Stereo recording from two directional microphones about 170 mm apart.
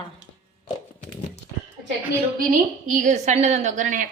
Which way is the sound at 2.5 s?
50° right (ahead or behind).